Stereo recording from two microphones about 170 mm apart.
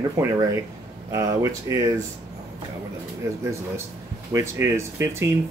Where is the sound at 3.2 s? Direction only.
20° right (ahead or behind).